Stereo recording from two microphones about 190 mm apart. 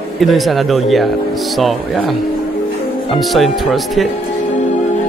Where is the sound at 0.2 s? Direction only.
Centre (ahead or behind).